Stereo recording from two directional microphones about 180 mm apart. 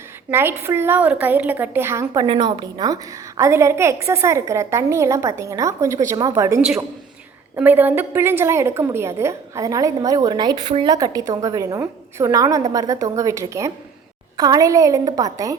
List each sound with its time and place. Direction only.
0.3 s a woman's voice: 10° right (ahead or behind)
2.2 s a woman's voice: 25° right (ahead or behind)